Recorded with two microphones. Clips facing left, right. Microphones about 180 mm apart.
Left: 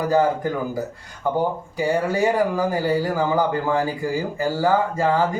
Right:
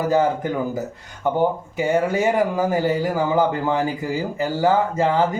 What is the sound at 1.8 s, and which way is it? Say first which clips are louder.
Speech: right 1 dB; 20° right (ahead or behind).